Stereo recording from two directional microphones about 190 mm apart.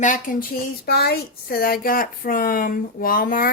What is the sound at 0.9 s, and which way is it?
Speech, 55° left (ahead or behind).